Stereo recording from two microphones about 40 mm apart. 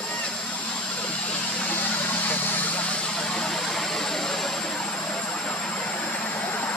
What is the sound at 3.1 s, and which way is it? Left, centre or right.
Vehicle, centre.